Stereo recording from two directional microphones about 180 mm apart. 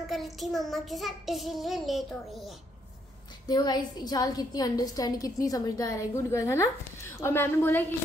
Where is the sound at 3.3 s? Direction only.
25° left (ahead or behind).